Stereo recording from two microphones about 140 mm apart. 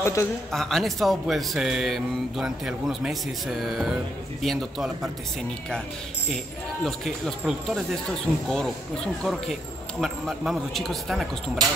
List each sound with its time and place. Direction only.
0.0 s speech: 20° left (ahead or behind)
0.5 s speech: centre (ahead or behind)
6.8 s speech: centre (ahead or behind)